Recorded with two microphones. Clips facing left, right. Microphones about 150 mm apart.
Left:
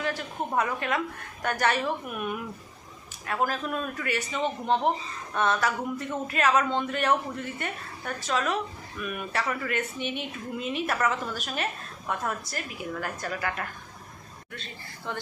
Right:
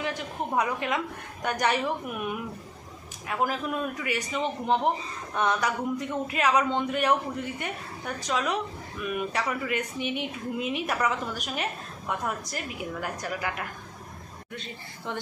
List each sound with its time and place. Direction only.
0.0 s a woman's voice: 15° right (ahead or behind)